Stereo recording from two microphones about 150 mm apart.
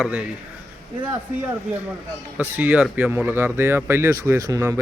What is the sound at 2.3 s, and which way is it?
Speech, 10° right (ahead or behind).